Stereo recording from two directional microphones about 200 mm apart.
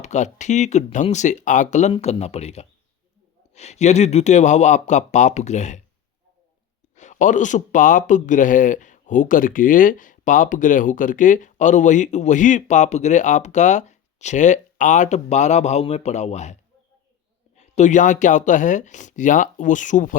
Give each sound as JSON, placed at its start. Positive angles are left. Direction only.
{"t": 0.0, "sound": "a man's voice", "side_deg": 35}
{"t": 6.9, "sound": "a man's voice", "side_deg": 35}
{"t": 17.6, "sound": "a man's voice", "side_deg": 35}